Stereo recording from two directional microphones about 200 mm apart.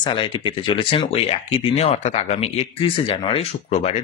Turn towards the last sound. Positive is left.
turn(degrees=30)  # may be behind; listen again after turning